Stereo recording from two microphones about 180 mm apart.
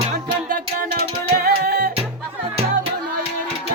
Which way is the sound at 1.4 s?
55° right (ahead or behind).